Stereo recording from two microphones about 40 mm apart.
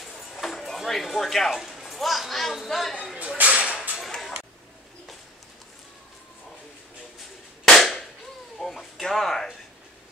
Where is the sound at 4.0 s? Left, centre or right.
Centre.